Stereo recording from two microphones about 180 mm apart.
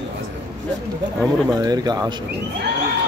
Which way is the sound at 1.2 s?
Centre (ahead or behind).